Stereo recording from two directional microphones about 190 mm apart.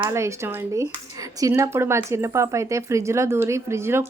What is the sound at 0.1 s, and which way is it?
Speech, 15° right (ahead or behind).